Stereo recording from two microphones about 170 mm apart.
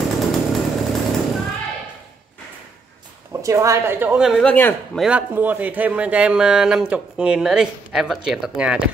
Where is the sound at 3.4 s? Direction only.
15° right (ahead or behind); by 5.0 s 10° left (ahead or behind).